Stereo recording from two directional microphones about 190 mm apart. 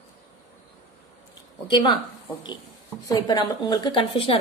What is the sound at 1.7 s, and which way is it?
Speech, 25° left (ahead or behind).